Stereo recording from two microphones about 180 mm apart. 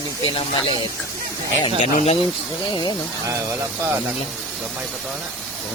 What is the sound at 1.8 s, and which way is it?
Speech, 40° left (ahead or behind).